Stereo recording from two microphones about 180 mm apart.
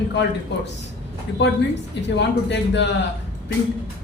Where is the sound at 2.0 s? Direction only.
75° left (ahead or behind).